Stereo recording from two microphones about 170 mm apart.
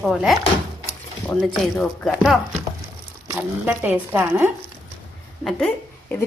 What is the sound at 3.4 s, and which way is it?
Speech, 10° right (ahead or behind).